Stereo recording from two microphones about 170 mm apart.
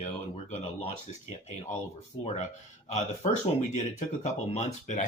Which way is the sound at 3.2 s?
40° left (ahead or behind).